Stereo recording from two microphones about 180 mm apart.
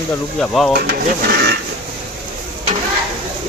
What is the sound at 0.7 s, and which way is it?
Speech, 60° right (ahead or behind).